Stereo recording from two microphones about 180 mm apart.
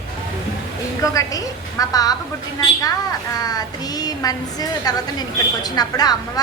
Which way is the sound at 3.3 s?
20° left (ahead or behind).